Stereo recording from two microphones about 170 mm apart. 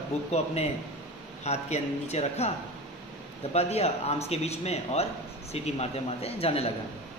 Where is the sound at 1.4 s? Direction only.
40° left (ahead or behind).